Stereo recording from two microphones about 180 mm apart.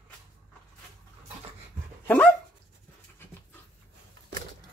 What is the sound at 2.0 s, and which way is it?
Dog, 10° left (ahead or behind).